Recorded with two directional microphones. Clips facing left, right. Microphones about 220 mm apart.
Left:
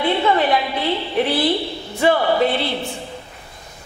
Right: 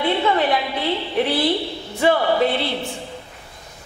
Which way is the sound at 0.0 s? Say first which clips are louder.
Left 1 dB; 15° left (ahead or behind).